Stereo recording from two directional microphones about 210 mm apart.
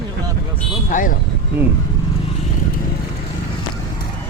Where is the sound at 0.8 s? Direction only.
40° left (ahead or behind).